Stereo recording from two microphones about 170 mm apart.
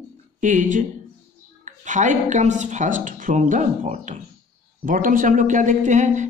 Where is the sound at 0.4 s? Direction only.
50° right (ahead or behind).